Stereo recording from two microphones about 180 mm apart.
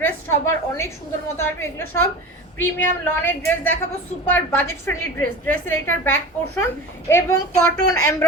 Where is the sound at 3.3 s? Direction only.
10° left (ahead or behind).